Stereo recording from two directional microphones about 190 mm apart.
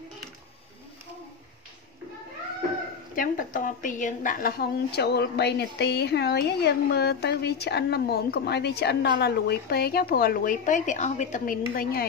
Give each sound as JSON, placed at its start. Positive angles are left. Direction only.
{"t": 3.2, "sound": "a woman's voice", "side_deg": 45}